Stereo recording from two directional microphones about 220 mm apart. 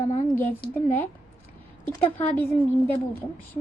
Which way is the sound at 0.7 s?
10° left (ahead or behind).